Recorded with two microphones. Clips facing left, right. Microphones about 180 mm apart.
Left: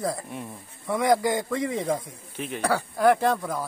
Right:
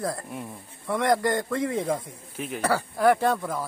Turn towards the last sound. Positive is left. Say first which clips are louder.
# even
turn(degrees=0)  # may be behind; listen again after turning